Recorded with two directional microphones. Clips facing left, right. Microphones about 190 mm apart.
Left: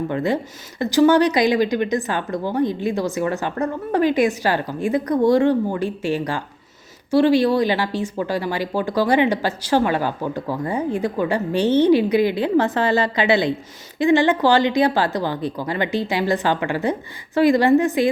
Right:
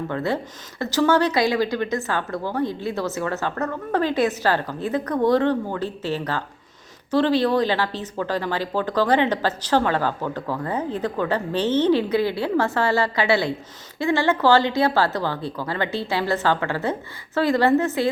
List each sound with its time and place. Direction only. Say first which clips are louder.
0.1 s speech: left 3 dB; 15° left (ahead or behind)